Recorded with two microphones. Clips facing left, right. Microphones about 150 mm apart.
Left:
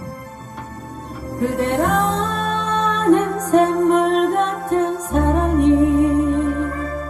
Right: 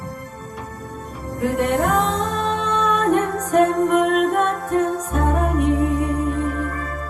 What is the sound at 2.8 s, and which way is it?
Music, 35° left (ahead or behind).